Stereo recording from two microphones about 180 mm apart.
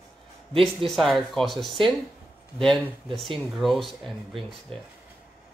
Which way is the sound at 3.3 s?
Centre (ahead or behind).